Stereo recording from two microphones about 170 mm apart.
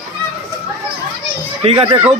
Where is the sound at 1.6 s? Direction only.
35° right (ahead or behind).